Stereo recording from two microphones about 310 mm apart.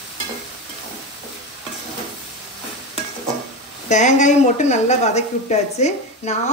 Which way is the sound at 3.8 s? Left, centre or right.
Left.